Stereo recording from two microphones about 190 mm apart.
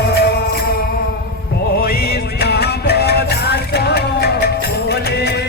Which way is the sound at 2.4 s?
60° left (ahead or behind).